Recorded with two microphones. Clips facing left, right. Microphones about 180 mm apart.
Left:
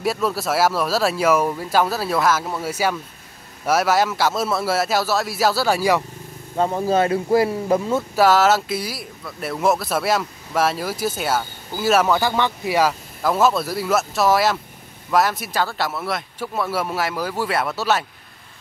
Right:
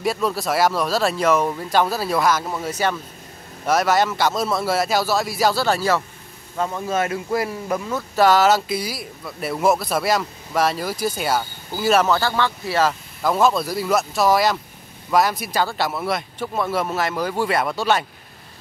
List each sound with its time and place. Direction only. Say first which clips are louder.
0.0 s speech: even; 5° left (ahead or behind)
6.5 s speech: left 4 dB; 35° left (ahead or behind)
8.2 s speech: right 1 dB; 5° left (ahead or behind)